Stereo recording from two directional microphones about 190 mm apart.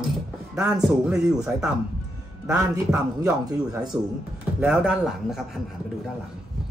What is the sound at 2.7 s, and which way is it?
Speech, 15° right (ahead or behind).